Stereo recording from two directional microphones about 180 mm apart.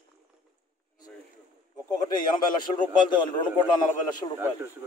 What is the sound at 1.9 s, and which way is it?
A man's voice, 25° left (ahead or behind).